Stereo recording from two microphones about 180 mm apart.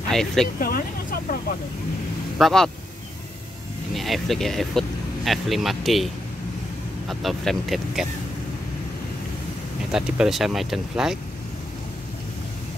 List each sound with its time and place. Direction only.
0.1 s speech: centre (ahead or behind)
0.6 s speech: 55° left (ahead or behind)
2.3 s speech: centre (ahead or behind)
3.9 s speech: centre (ahead or behind)
7.1 s speech: centre (ahead or behind)
9.8 s speech: 5° right (ahead or behind)